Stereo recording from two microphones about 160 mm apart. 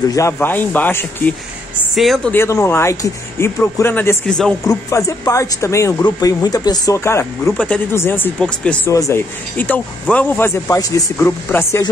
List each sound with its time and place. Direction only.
0.1 s speech: 15° left (ahead or behind)
2.0 s speech: centre (ahead or behind)
2.3 s speech: 15° left (ahead or behind)
4.3 s speech: 5° left (ahead or behind)
4.6 s speech: 20° left (ahead or behind)
8.9 s speech: 15° left (ahead or behind)